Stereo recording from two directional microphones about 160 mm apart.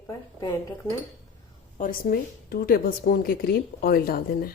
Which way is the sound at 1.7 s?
60° left (ahead or behind).